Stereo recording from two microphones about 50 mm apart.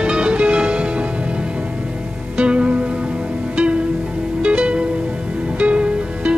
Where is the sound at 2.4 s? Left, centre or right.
Right.